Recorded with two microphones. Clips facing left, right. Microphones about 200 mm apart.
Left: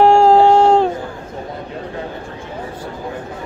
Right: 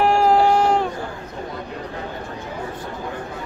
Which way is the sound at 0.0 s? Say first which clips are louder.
Left 6 dB; 25° left (ahead or behind).